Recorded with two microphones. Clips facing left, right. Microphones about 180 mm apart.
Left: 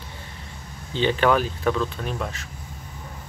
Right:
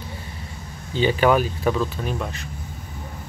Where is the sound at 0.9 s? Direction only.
10° right (ahead or behind).